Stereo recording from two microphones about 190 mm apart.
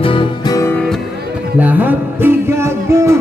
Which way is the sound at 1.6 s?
10° right (ahead or behind).